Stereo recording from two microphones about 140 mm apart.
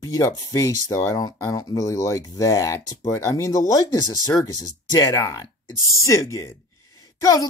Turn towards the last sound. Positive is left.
turn(degrees=25)  # may be behind; listen again after turning